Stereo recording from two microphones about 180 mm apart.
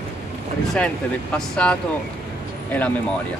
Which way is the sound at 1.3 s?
5° left (ahead or behind).